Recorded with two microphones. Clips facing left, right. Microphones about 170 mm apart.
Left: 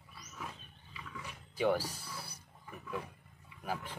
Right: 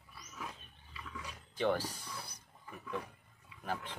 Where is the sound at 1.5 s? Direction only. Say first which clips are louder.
Left 2 dB; 10° left (ahead or behind).